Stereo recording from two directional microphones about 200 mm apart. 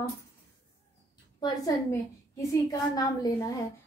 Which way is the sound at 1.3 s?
20° left (ahead or behind).